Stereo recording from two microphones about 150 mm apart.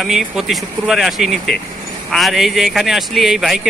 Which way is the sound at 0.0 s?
Centre (ahead or behind).